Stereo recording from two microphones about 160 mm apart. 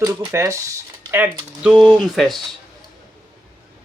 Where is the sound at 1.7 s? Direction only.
Centre (ahead or behind).